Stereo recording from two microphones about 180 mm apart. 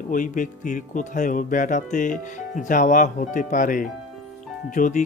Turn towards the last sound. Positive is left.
turn(degrees=45)  # may be behind; listen again after turning